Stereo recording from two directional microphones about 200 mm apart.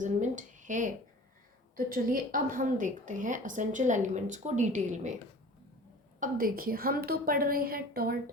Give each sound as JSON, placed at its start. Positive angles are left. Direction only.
{"t": 0.0, "sound": "a woman's voice", "side_deg": -40}
{"t": 6.1, "sound": "a woman's voice", "side_deg": -45}